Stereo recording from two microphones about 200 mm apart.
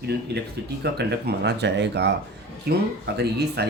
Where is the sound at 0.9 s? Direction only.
55° right (ahead or behind).